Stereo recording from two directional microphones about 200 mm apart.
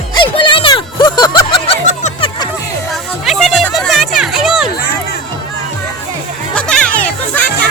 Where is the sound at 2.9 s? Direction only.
Centre (ahead or behind).